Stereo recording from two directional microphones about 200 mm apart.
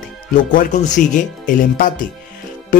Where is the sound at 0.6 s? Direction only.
40° left (ahead or behind).